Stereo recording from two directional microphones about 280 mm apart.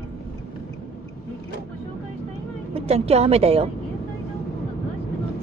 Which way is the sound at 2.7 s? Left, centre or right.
Right.